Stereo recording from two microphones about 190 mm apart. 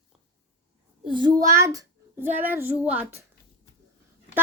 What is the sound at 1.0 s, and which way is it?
A child's voice, 25° right (ahead or behind).